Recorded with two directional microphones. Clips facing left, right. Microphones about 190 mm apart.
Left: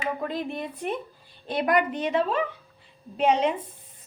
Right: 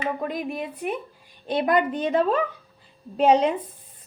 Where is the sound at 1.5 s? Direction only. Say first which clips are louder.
Right 2 dB; 25° right (ahead or behind).